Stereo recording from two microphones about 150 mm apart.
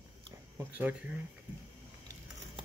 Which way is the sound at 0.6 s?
10° right (ahead or behind).